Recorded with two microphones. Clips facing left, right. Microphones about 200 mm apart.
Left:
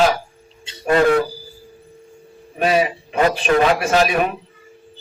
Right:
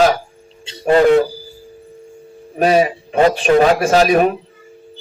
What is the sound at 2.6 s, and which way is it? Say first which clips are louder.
A man's voice: right 4 dB; 40° right (ahead or behind).